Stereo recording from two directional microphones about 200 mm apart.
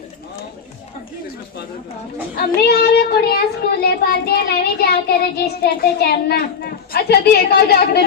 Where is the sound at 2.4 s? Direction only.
50° left (ahead or behind).